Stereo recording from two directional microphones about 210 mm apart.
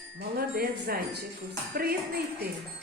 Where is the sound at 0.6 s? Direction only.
45° right (ahead or behind).